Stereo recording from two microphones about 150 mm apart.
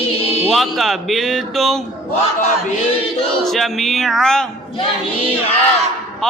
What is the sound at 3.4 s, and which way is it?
Speech, centre (ahead or behind).